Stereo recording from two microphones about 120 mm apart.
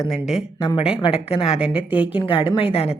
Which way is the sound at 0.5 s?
35° left (ahead or behind).